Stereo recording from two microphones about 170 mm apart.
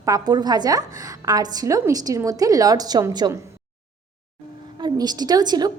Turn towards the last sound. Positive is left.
turn(degrees=-25)  # may be behind; listen again after turning